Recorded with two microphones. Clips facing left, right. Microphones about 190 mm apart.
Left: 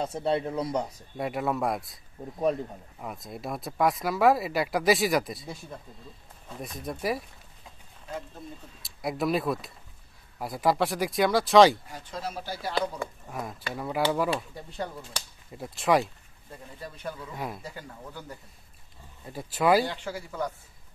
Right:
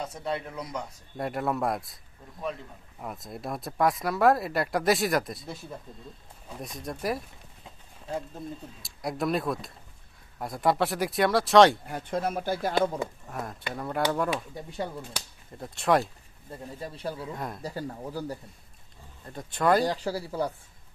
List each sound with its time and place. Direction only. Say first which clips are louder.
0.0 s speech: left 5 dB; 30° left (ahead or behind)
1.1 s speech: even; centre (ahead or behind)
3.0 s speech: even; centre (ahead or behind)
8.8 s speech: left 1 dB; centre (ahead or behind)
11.8 s speech: right 7 dB; 55° right (ahead or behind)
13.3 s speech: even; centre (ahead or behind)
14.3 s speech: left 1 dB; 15° right (ahead or behind)
14.8 s speech: right 1 dB; centre (ahead or behind)
16.8 s speech: right 2 dB; 30° right (ahead or behind)
19.2 s speech: left 1 dB; 5° left (ahead or behind)
19.8 s speech: right 3 dB; 40° right (ahead or behind)